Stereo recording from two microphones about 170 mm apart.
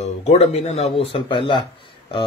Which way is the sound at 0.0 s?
40° left (ahead or behind).